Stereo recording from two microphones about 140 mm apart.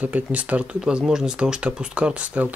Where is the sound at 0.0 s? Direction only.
10° right (ahead or behind).